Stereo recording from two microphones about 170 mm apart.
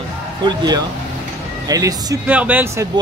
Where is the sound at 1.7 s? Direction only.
20° right (ahead or behind).